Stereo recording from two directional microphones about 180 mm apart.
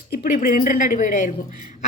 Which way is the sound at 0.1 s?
55° left (ahead or behind).